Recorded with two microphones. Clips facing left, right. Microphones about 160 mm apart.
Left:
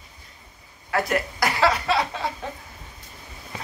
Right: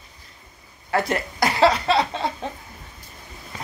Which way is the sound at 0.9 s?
25° right (ahead or behind).